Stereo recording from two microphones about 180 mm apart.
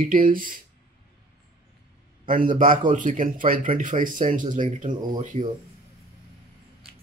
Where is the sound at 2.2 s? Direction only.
50° right (ahead or behind).